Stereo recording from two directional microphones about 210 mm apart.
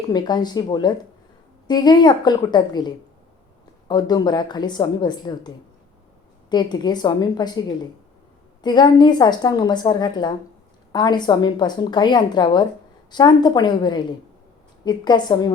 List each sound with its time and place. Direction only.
0.1 s a woman's voice: 20° left (ahead or behind)
6.5 s a woman's voice: 20° left (ahead or behind)
8.6 s a woman's voice: 20° left (ahead or behind)